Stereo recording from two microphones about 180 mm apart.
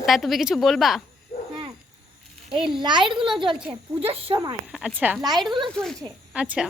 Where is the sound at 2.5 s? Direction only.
5° right (ahead or behind).